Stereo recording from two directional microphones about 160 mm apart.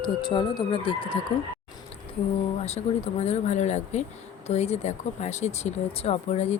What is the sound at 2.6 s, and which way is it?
Speech, 40° left (ahead or behind).